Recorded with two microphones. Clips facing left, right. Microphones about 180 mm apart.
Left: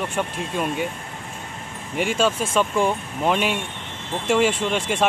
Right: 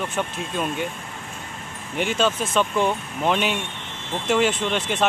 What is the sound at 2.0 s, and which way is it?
Speech, 5° left (ahead or behind).